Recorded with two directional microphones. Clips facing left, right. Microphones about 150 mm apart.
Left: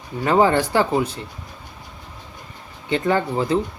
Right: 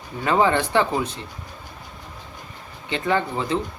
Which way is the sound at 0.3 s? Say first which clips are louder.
Left 3 dB; 40° left (ahead or behind).